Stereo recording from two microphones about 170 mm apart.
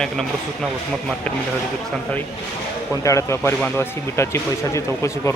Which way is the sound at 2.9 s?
20° left (ahead or behind).